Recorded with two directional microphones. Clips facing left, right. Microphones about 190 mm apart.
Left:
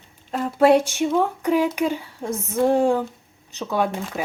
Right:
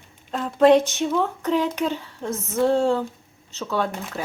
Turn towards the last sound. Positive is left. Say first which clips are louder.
# left 2 dB
turn(degrees=15)  # may be behind; listen again after turning